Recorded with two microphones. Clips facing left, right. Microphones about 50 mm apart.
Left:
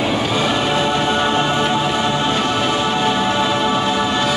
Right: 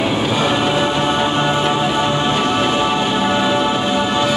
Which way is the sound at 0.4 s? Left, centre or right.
Centre.